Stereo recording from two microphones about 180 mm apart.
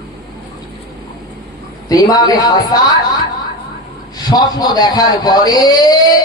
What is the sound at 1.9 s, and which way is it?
Speech, 20° left (ahead or behind).